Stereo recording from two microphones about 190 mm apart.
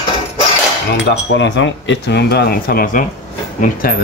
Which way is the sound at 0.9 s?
65° left (ahead or behind).